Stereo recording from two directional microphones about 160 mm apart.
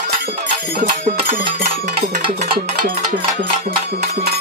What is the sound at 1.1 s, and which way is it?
Music, 55° right (ahead or behind).